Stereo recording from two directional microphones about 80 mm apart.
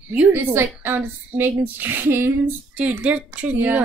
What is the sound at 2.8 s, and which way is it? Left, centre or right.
Speech, centre.